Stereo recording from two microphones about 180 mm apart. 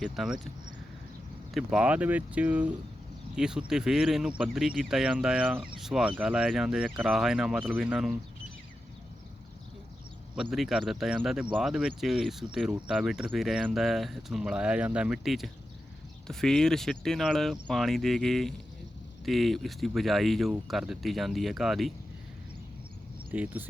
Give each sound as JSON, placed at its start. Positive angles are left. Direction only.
{"t": 0.0, "sound": "speech", "side_deg": 0}
{"t": 1.5, "sound": "speech", "side_deg": -5}
{"t": 10.5, "sound": "speech", "side_deg": 0}
{"t": 23.3, "sound": "speech", "side_deg": -10}